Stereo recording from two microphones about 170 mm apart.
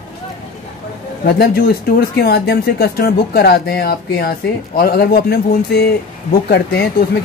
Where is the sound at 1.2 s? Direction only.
65° left (ahead or behind).